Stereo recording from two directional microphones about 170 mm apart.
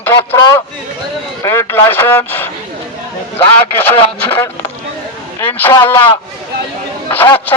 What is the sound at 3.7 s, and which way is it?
Speech, 10° left (ahead or behind).